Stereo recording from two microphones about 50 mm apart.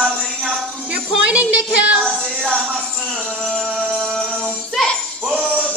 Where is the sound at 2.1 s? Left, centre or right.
Centre.